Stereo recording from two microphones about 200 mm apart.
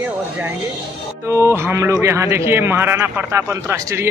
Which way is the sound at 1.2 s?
15° right (ahead or behind).